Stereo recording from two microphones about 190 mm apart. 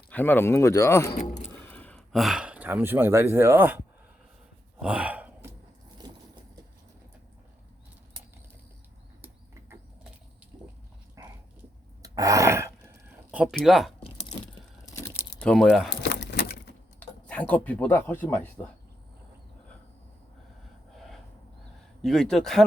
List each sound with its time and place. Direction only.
0.1 s speech: 10° left (ahead or behind); by 3.8 s 10° right (ahead or behind)
4.8 s gasp: 5° right (ahead or behind)
9.2 s a sound: 10° right (ahead or behind)
11.1 s dog: 15° right (ahead or behind)
12.0 s throat clearing: 20° right (ahead or behind); by 13.9 s centre (ahead or behind)
15.4 s speech: 5° left (ahead or behind)
15.9 s a sound: 65° left (ahead or behind)
17.0 s speech: 5° left (ahead or behind)
20.9 s gasp: centre (ahead or behind)
22.0 s speech: centre (ahead or behind)